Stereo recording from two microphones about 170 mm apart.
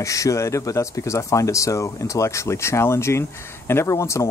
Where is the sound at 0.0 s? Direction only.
20° left (ahead or behind).